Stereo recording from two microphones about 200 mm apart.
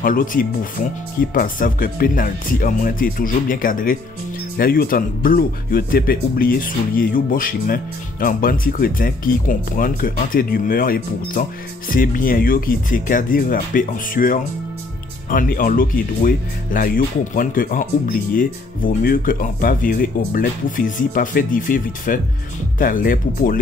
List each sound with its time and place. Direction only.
0.0 s speech: 45° left (ahead or behind)